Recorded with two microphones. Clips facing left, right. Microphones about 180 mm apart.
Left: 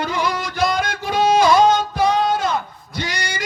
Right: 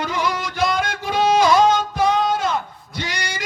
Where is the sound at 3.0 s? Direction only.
40° left (ahead or behind).